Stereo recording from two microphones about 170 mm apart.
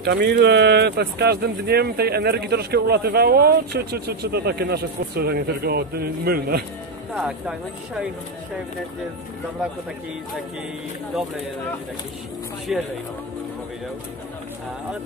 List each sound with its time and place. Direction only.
0.0 s speech: 75° right (ahead or behind)
7.2 s speech: 5° right (ahead or behind)
12.7 s speech: 5° right (ahead or behind)